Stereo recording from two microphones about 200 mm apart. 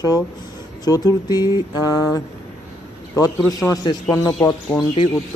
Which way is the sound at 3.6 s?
15° left (ahead or behind).